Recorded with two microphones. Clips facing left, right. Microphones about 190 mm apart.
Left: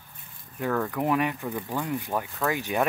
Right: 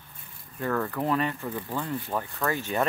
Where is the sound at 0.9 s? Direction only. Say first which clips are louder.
Left 2 dB; 15° left (ahead or behind).